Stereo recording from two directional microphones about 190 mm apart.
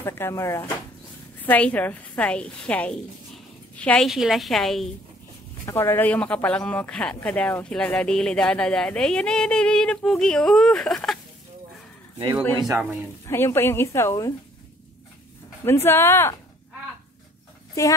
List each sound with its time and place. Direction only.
0.0 s a woman's voice: 15° left (ahead or behind)
5.7 s speech: 15° left (ahead or behind)
12.5 s speech: 15° right (ahead or behind)
13.3 s a woman's voice: 10° left (ahead or behind)
15.6 s a woman's voice: 15° left (ahead or behind)
17.8 s a woman's voice: 15° left (ahead or behind)